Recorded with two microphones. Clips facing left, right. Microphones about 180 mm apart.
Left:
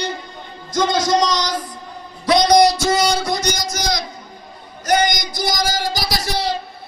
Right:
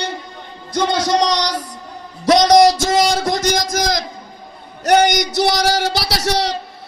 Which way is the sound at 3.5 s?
90° right.